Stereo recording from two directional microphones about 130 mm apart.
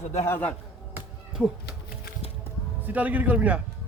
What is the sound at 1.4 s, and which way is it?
Speech, 10° right (ahead or behind).